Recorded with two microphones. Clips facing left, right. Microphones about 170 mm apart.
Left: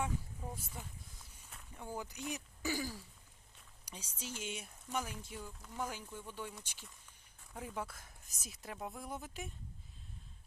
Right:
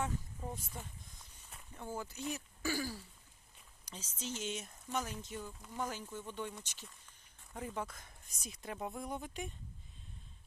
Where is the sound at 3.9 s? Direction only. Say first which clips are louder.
Right 3 dB; 10° left (ahead or behind).